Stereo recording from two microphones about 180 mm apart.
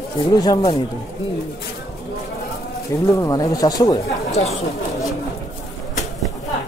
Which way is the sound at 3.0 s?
15° left (ahead or behind).